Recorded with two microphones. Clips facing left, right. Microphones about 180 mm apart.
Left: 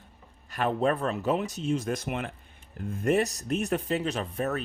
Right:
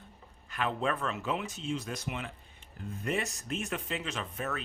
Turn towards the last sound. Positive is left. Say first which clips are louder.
# left 7 dB
turn(degrees=40)  # may be behind; listen again after turning